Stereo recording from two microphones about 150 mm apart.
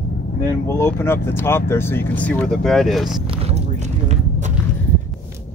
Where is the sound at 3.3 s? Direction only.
45° right (ahead or behind).